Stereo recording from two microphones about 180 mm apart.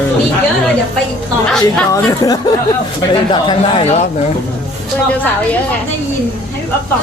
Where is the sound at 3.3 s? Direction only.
30° left (ahead or behind).